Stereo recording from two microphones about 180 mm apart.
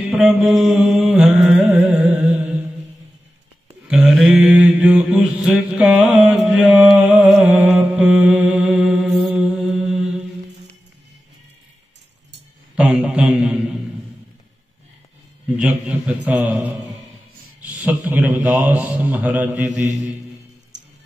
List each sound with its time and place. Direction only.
0.1 s music: 5° right (ahead or behind)
3.8 s mantra: 5° right (ahead or behind)
12.7 s a sound: 5° right (ahead or behind)
15.5 s mantra: 5° right (ahead or behind)
17.8 s a man's voice: 10° right (ahead or behind)
20.7 s music: 75° right (ahead or behind)